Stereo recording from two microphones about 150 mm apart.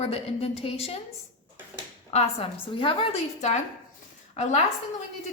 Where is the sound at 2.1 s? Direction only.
45° left (ahead or behind).